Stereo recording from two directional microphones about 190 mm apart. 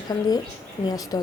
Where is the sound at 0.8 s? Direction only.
20° left (ahead or behind).